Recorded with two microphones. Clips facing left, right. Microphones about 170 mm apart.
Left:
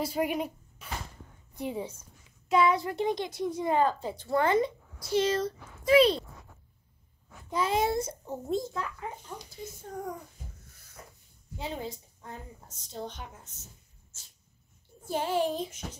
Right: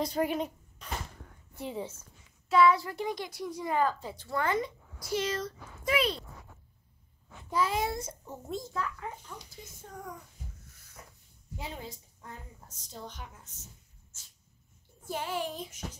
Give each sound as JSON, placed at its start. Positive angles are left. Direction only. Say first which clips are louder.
{"t": 0.0, "sound": "a woman's voice", "louder": "even", "side_deg": 10}
{"t": 7.5, "sound": "a woman's voice", "louder": "left 3 dB", "side_deg": 25}
{"t": 11.5, "sound": "a woman's voice", "louder": "left 5 dB", "side_deg": 25}
{"t": 15.0, "sound": "a woman's voice", "louder": "left 6 dB", "side_deg": 30}